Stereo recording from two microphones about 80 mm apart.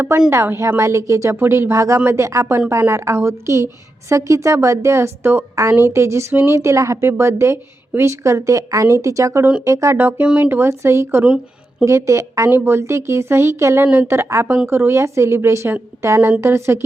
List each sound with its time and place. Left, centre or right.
0.3 s speech: right
10.0 s speech: right
12.5 s speech: right